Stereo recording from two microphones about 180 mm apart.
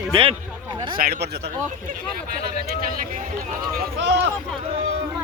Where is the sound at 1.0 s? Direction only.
50° right (ahead or behind).